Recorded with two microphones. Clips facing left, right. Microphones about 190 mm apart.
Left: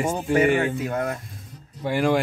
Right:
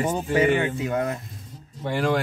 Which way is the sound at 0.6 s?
15° right (ahead or behind).